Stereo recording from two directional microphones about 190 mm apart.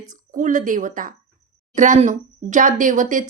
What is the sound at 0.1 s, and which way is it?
Speech, 40° right (ahead or behind).